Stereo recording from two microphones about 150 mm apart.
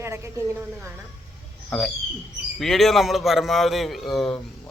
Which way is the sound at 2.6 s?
Centre (ahead or behind).